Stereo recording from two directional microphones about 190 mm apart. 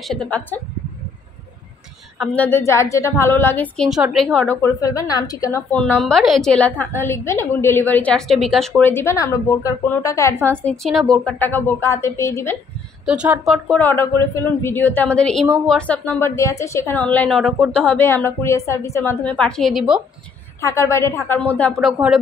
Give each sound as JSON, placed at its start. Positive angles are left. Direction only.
{"t": 0.1, "sound": "a woman's voice", "side_deg": 5}
{"t": 2.1, "sound": "a woman's voice", "side_deg": 5}
{"t": 10.6, "sound": "a woman's voice", "side_deg": 5}
{"t": 13.0, "sound": "a woman's voice", "side_deg": -5}
{"t": 20.6, "sound": "a woman's voice", "side_deg": 15}